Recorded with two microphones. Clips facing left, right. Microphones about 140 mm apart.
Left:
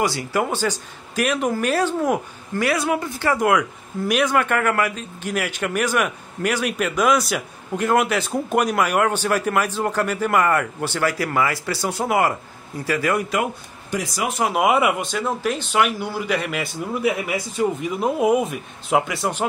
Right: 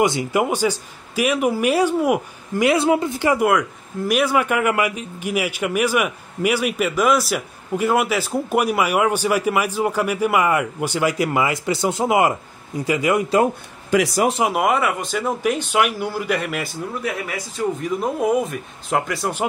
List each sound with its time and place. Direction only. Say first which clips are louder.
0.0 s speech: right 3 dB; 20° right (ahead or behind)
2.7 s speech: right 5 dB; 25° right (ahead or behind)
4.1 s speech: right 1 dB; 5° right (ahead or behind)
14.5 s a man's voice: left 1 dB; 5° left (ahead or behind)
15.0 s a man's voice: right 1 dB; 5° right (ahead or behind)
17.0 s a man's voice: left 4 dB; 10° left (ahead or behind)